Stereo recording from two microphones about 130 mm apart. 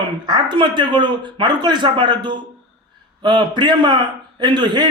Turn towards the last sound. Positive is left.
turn(degrees=-35)  # may be behind; listen again after turning